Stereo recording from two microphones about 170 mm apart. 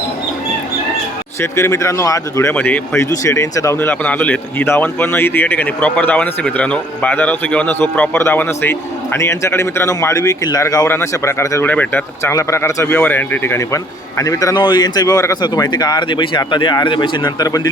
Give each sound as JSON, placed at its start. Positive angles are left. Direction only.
{"t": 1.4, "sound": "speech", "side_deg": 15}